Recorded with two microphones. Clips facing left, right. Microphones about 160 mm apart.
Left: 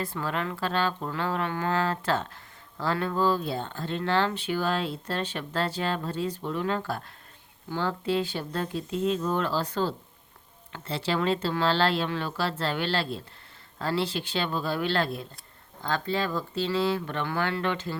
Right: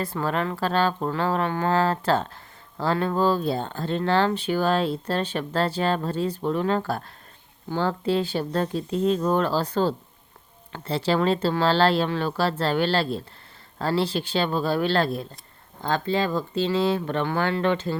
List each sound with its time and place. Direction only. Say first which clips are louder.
0.1 s speech: right 5 dB; 40° right (ahead or behind)
15.9 s speech: right 4 dB; 25° right (ahead or behind)